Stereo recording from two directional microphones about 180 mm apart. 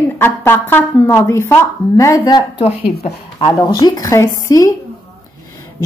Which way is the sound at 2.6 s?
35° left (ahead or behind).